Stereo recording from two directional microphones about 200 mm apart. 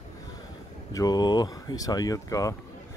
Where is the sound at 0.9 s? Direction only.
20° left (ahead or behind).